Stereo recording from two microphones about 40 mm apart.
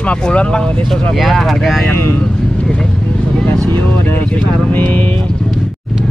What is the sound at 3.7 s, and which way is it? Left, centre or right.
Vehicle, left.